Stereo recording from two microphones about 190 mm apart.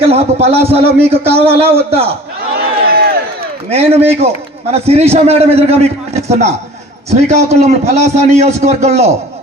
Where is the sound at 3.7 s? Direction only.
30° right (ahead or behind).